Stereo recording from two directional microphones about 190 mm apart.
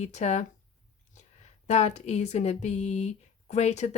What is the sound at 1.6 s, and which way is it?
Speech, 35° left (ahead or behind).